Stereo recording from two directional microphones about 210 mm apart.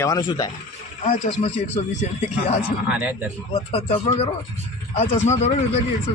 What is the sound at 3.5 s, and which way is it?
A man's voice, 30° left (ahead or behind).